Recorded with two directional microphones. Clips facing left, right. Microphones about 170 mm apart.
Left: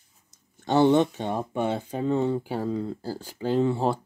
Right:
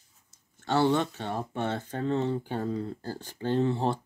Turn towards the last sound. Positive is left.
turn(degrees=10)  # may be behind; listen again after turning